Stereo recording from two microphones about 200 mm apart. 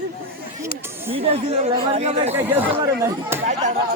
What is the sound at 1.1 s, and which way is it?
Speech, 30° right (ahead or behind).